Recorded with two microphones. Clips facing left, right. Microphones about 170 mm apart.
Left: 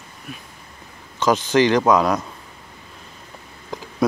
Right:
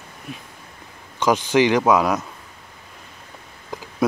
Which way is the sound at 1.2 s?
10° right (ahead or behind).